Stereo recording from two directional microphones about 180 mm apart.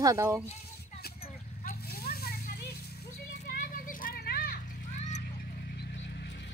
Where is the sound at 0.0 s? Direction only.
15° right (ahead or behind).